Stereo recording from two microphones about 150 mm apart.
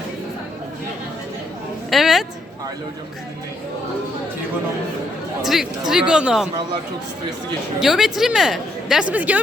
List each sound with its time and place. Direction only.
1.9 s a sound: centre (ahead or behind)
5.5 s speech: centre (ahead or behind)
7.8 s speech: 5° right (ahead or behind)